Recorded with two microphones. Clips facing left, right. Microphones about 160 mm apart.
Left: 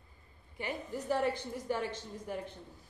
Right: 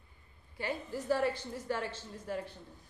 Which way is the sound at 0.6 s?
15° left (ahead or behind).